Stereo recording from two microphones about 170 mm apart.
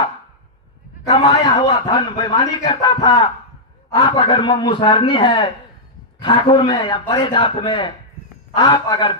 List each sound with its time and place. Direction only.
1.1 s a man's voice: 25° left (ahead or behind)